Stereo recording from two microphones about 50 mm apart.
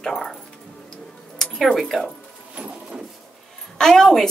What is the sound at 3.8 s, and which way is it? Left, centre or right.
Speech, centre.